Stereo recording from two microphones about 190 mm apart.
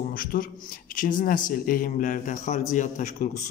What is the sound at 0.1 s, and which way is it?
A man's voice, 50° left (ahead or behind).